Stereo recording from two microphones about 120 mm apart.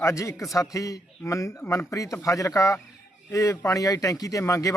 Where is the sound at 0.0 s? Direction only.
25° left (ahead or behind).